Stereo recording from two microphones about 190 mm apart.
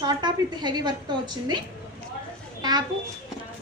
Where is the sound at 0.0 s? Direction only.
20° right (ahead or behind).